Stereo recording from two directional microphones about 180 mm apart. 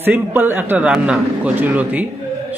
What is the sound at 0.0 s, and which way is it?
A man's voice, 10° right (ahead or behind).